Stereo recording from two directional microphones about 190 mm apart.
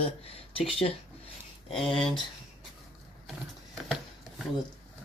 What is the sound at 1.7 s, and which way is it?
Speech, centre (ahead or behind).